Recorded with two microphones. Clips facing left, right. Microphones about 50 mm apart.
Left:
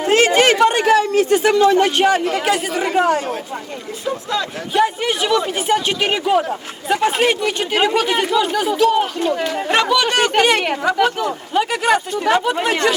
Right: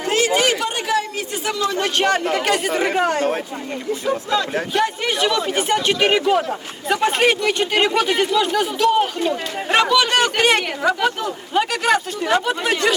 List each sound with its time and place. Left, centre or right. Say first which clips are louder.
0.0 s a sound: left 5 dB; left
1.6 s speech: left 5 dB; left
2.0 s speech: left 2 dB; centre
4.4 s speech: left 5 dB; centre